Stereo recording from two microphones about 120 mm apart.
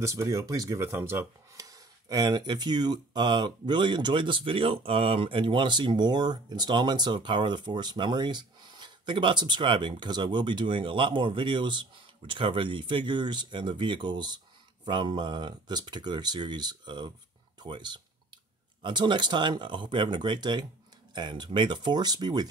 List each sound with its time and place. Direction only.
0.0 s speech: 25° right (ahead or behind)